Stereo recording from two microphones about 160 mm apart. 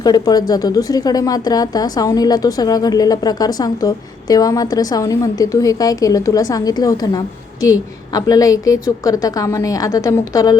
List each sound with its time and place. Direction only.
0.0 s a woman's voice: 25° left (ahead or behind)